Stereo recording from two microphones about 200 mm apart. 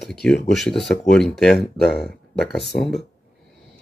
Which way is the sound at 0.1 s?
5° left (ahead or behind).